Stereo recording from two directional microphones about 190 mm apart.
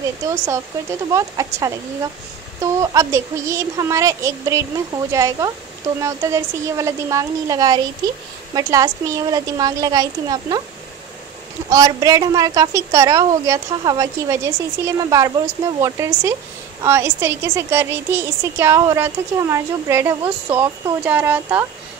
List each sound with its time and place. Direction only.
1.1 s a woman's voice: 15° right (ahead or behind)
11.7 s a woman's voice: 20° right (ahead or behind)